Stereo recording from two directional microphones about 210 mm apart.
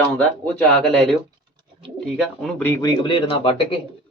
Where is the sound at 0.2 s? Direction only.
5° left (ahead or behind).